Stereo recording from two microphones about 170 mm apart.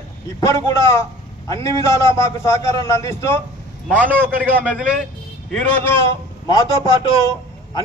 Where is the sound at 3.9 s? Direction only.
10° right (ahead or behind).